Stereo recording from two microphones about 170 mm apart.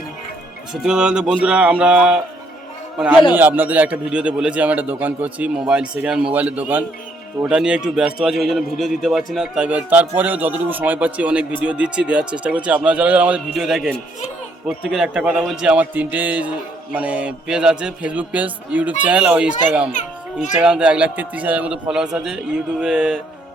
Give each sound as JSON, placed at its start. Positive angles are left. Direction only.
{"t": 0.7, "sound": "a man's voice", "side_deg": -5}
{"t": 3.3, "sound": "a man's voice", "side_deg": -10}
{"t": 19.9, "sound": "children playing", "side_deg": 45}
{"t": 20.6, "sound": "a man's voice", "side_deg": -5}